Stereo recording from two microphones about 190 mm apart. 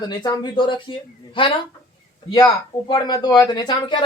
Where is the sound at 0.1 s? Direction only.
20° left (ahead or behind).